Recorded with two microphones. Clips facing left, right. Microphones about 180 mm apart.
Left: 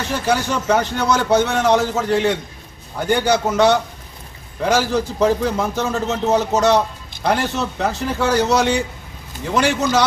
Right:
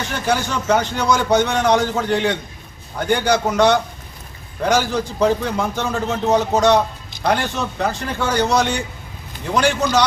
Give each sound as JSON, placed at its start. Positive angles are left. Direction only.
{"t": 0.3, "sound": "a man's voice", "side_deg": 5}